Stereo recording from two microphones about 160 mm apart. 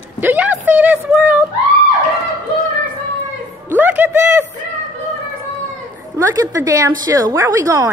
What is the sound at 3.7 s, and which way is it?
Speech, 10° right (ahead or behind).